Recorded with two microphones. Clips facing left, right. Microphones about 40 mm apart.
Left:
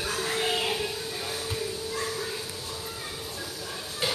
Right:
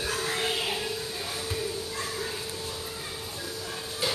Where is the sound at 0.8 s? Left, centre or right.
Centre.